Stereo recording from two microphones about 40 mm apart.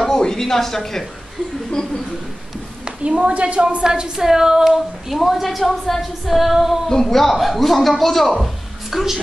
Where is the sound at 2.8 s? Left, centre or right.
Right; by 6.8 s centre.